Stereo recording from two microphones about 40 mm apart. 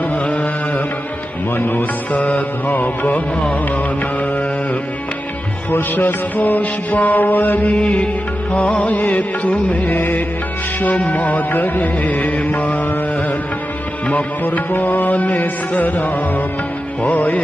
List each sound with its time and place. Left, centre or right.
0.1 s music: left
1.6 s music: left
2.1 s music: left
5.7 s music: left
7.7 s music: left
14.4 s music: left